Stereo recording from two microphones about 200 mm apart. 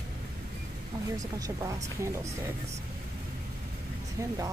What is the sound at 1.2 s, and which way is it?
Speech, 15° right (ahead or behind).